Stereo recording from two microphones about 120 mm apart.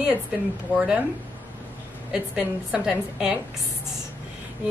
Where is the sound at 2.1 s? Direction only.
10° right (ahead or behind).